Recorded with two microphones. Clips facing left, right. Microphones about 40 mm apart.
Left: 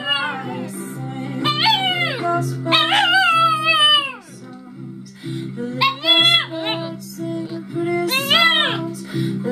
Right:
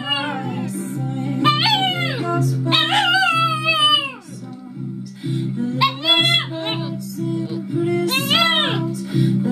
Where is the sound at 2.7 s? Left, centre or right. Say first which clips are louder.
Left 2 dB; centre.